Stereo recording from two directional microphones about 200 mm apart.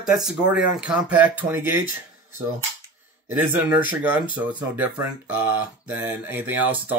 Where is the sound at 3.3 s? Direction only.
10° right (ahead or behind).